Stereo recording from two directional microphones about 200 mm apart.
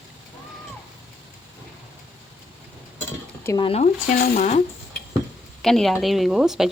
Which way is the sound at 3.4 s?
20° left (ahead or behind).